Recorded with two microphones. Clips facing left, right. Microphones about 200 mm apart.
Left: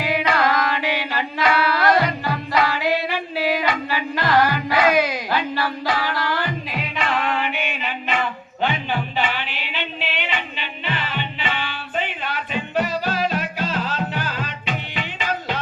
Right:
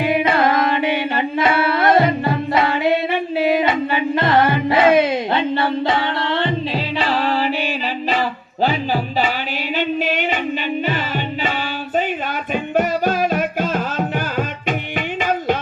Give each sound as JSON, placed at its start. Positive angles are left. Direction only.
{"t": 0.0, "sound": "music", "side_deg": -25}
{"t": 11.4, "sound": "music", "side_deg": -40}